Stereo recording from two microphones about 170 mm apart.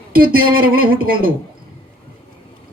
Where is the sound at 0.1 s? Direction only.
60° right (ahead or behind).